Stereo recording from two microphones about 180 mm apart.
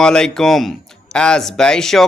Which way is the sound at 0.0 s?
5° left (ahead or behind).